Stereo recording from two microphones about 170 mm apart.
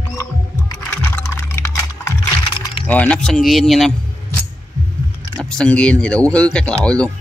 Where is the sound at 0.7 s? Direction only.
15° left (ahead or behind).